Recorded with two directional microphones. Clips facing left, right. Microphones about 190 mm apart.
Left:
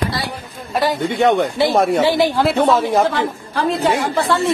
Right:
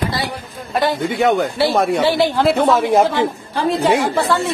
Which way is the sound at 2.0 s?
15° left (ahead or behind).